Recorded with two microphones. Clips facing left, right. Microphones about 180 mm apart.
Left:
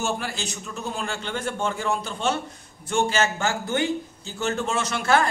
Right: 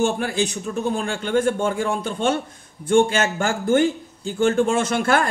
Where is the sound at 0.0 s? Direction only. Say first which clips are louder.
Right 7 dB; 55° right (ahead or behind).